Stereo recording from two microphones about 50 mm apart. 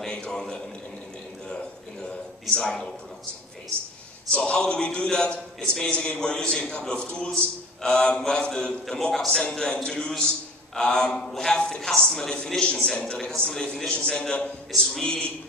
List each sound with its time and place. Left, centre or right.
0.0 s a man's voice: centre
2.5 s a man's voice: centre
4.3 s a man's voice: left
9.4 s a man's voice: centre